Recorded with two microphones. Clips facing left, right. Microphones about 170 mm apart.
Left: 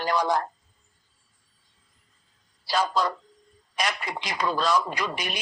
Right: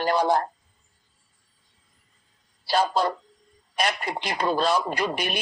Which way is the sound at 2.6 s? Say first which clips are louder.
Right 2 dB; 30° right (ahead or behind).